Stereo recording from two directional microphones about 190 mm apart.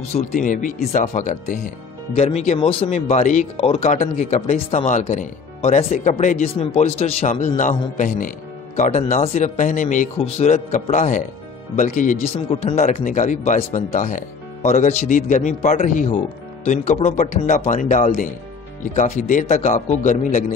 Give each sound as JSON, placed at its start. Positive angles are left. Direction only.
{"t": 0.1, "sound": "speech", "side_deg": 40}